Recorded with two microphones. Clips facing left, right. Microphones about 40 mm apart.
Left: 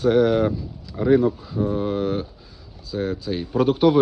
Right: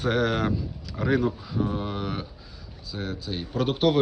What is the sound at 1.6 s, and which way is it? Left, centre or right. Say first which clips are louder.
Speech: left 5 dB; right.